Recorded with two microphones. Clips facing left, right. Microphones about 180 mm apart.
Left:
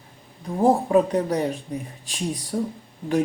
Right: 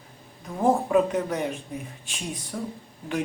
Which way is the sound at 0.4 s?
35° left (ahead or behind).